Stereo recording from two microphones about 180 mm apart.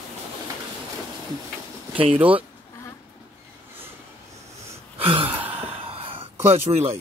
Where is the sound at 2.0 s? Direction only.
30° right (ahead or behind).